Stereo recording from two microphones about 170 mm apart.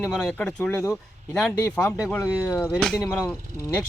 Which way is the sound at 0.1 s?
5° left (ahead or behind).